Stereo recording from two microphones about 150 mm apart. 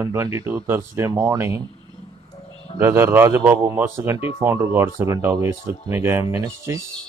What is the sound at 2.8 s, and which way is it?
Speech, 15° right (ahead or behind).